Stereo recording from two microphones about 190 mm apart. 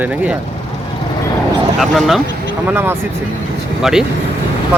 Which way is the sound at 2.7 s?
10° right (ahead or behind).